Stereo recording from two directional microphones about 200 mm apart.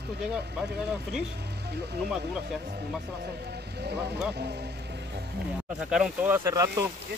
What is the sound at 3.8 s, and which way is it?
Speech, 55° right (ahead or behind).